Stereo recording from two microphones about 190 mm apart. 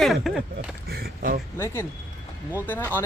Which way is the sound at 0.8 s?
55° right (ahead or behind).